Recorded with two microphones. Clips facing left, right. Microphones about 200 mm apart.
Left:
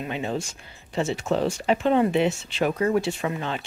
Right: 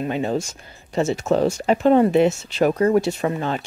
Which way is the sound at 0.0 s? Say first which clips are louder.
Right 6 dB; 40° right (ahead or behind).